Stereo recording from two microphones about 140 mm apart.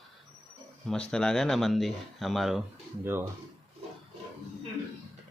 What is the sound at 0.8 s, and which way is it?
Speech, 5° left (ahead or behind).